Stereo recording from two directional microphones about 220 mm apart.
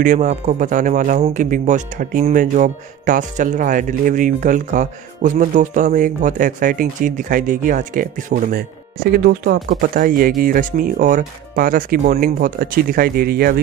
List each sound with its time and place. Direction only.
0.0 s speech: 35° right (ahead or behind)